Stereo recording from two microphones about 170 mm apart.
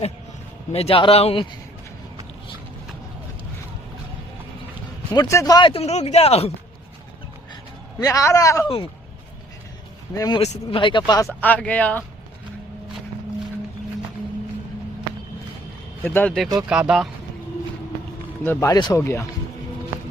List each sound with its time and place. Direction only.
0.7 s speech: 35° left (ahead or behind)
5.1 s speech: 20° left (ahead or behind); by 6.5 s 35° left (ahead or behind)
7.9 s a man's voice: 20° left (ahead or behind)
10.2 s a man's voice: 25° left (ahead or behind)
10.4 s speech: 35° left (ahead or behind); by 12.0 s 10° left (ahead or behind)
16.0 s speech: 10° left (ahead or behind)
16.6 s speech: 5° right (ahead or behind)
18.4 s speech: 20° left (ahead or behind)